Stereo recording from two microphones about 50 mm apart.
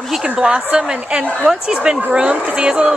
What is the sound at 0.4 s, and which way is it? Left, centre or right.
A woman's voice, centre.